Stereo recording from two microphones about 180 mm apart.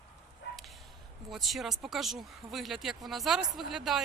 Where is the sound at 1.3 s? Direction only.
Centre (ahead or behind).